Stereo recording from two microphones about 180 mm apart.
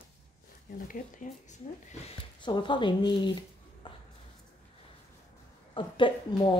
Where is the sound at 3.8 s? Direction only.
30° left (ahead or behind).